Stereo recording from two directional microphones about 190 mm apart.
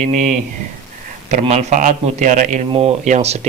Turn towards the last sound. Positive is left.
turn(degrees=-35)  # may be behind; listen again after turning